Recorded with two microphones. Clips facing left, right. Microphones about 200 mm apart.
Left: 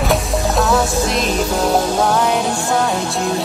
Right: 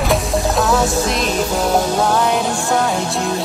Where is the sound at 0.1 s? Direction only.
Centre (ahead or behind).